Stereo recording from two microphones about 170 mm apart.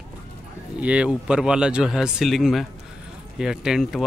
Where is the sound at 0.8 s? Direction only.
5° right (ahead or behind).